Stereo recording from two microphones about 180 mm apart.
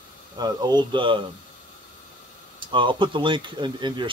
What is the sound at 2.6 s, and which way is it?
Speech, 25° right (ahead or behind).